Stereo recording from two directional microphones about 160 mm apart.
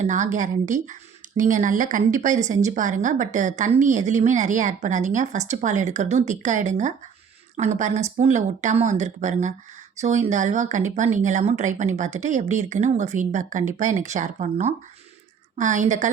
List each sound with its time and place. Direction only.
0.0 s a woman's voice: 50° right (ahead or behind)